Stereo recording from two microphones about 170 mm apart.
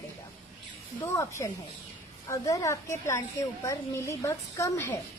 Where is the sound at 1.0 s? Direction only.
15° left (ahead or behind).